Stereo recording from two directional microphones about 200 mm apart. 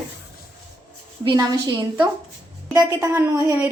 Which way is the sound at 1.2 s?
20° right (ahead or behind).